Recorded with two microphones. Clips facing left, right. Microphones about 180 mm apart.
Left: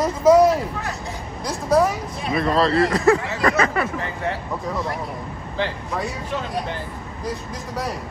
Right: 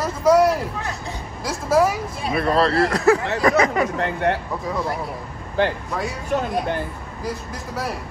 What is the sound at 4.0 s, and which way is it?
Speech, 65° right (ahead or behind).